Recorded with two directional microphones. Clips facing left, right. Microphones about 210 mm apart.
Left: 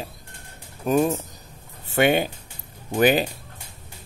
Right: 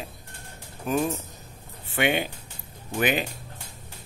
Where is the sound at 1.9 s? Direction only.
40° left (ahead or behind).